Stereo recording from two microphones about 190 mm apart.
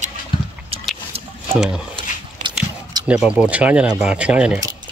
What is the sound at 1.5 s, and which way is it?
Speech, 5° right (ahead or behind).